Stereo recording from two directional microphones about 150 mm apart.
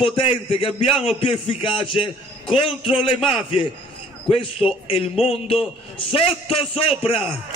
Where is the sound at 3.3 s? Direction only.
35° left (ahead or behind).